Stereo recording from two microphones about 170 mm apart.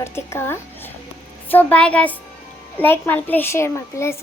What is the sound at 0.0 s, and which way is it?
A woman's voice, 15° left (ahead or behind).